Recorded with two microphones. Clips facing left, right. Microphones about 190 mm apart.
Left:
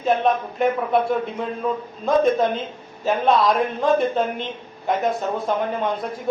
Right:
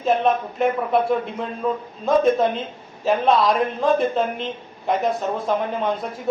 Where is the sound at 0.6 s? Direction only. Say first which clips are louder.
Even; centre (ahead or behind).